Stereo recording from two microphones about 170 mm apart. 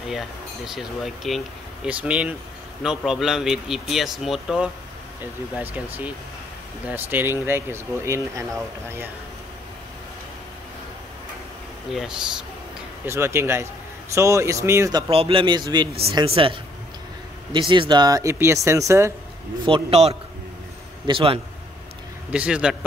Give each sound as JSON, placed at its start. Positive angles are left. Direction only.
{"t": 0.7, "sound": "speech", "side_deg": 0}
{"t": 6.9, "sound": "speech", "side_deg": -10}
{"t": 11.9, "sound": "speech", "side_deg": 0}
{"t": 13.0, "sound": "speech", "side_deg": -15}
{"t": 15.0, "sound": "speech", "side_deg": -35}
{"t": 19.6, "sound": "speech", "side_deg": -35}
{"t": 22.3, "sound": "speech", "side_deg": -5}